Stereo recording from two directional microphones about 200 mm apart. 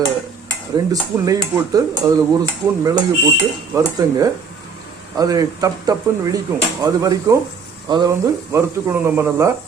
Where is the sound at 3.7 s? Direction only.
15° right (ahead or behind).